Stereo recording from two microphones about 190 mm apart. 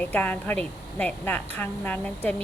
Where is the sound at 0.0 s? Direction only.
10° left (ahead or behind).